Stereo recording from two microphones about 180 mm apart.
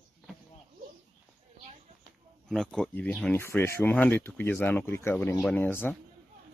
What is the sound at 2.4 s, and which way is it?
Speech, centre (ahead or behind).